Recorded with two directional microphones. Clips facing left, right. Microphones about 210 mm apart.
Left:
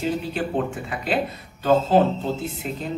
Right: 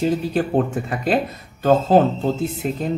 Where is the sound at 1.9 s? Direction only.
45° right (ahead or behind).